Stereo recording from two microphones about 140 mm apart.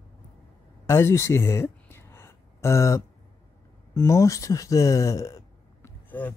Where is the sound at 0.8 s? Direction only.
20° left (ahead or behind).